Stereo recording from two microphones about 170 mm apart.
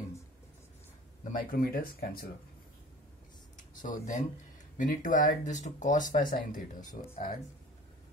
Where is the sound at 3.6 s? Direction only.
50° left (ahead or behind).